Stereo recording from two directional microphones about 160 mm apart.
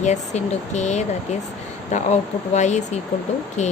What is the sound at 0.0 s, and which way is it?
Speech, 45° left (ahead or behind).